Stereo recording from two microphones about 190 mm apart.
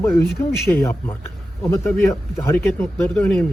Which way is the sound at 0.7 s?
20° left (ahead or behind).